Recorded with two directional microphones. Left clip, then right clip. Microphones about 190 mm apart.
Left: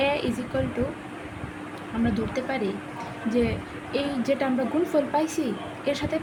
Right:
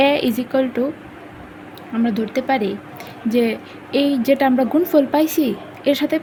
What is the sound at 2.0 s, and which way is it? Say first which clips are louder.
Speech: right 7 dB; 55° right (ahead or behind).